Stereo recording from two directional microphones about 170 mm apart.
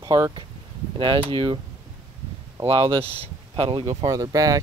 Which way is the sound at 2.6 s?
35° right (ahead or behind).